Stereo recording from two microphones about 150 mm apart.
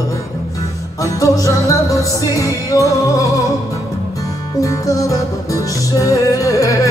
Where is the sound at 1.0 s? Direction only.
20° left (ahead or behind).